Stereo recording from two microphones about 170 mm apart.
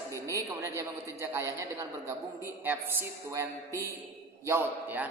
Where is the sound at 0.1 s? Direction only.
20° right (ahead or behind).